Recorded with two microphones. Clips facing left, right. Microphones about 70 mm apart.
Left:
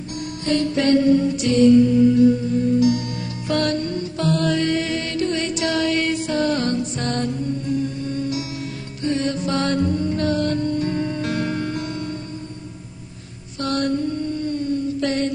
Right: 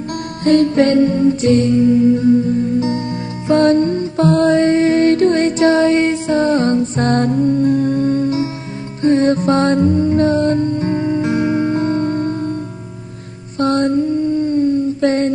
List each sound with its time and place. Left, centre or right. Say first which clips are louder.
0.4 s music: right 8 dB; right
3.4 s music: right 10 dB; right
13.6 s a sound: right 7 dB; right